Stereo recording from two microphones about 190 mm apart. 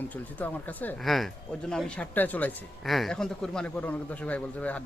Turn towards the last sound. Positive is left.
turn(degrees=5)  # may be behind; listen again after turning